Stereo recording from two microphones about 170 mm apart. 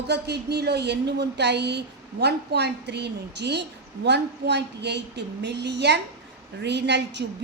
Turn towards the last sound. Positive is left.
turn(degrees=-90)